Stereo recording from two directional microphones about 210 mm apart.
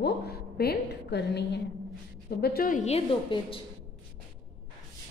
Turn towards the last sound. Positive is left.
turn(degrees=25)  # may be behind; listen again after turning